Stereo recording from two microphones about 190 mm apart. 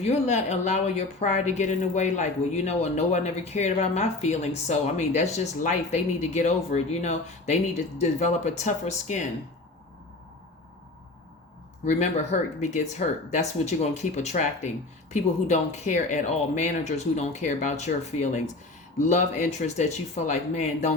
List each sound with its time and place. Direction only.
0.0 s speech: 35° left (ahead or behind)
11.9 s speech: 40° left (ahead or behind)